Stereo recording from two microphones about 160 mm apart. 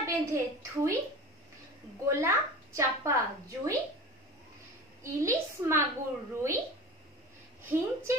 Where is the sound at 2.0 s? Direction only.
20° right (ahead or behind).